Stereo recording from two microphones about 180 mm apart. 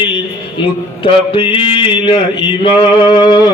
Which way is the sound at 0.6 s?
30° left (ahead or behind).